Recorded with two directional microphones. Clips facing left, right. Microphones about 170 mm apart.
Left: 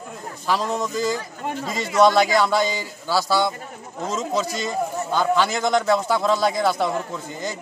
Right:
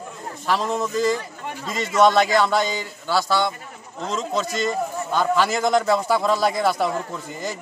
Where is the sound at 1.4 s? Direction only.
45° left (ahead or behind).